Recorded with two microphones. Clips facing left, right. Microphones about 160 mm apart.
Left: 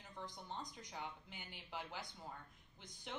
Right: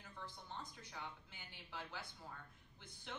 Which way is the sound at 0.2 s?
15° left (ahead or behind).